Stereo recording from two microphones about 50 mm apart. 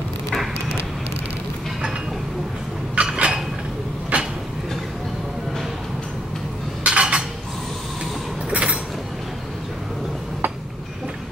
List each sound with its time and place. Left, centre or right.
3.0 s a sound: right
4.1 s train: right
6.8 s dishes: right
8.5 s creak: right